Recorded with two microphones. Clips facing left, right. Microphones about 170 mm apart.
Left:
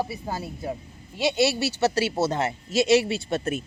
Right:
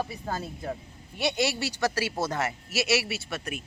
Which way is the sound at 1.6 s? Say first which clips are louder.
Left 5 dB; 25° left (ahead or behind).